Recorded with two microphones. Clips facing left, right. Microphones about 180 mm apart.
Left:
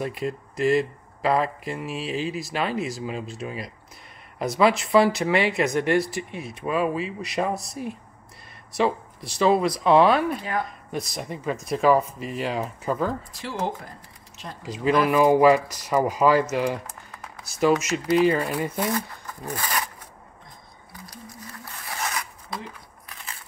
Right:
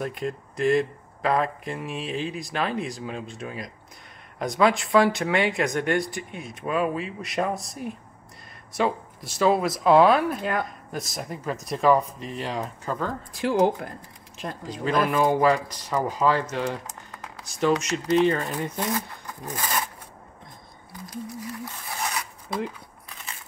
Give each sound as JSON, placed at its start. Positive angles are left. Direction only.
{"t": 0.0, "sound": "speech", "side_deg": 0}
{"t": 13.3, "sound": "speech", "side_deg": -55}
{"t": 14.7, "sound": "speech", "side_deg": 5}
{"t": 19.4, "sound": "speech", "side_deg": -15}